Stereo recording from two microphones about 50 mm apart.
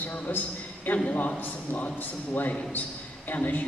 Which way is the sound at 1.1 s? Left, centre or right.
Left.